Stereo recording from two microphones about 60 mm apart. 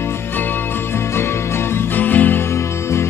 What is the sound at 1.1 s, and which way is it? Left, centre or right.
Music, left.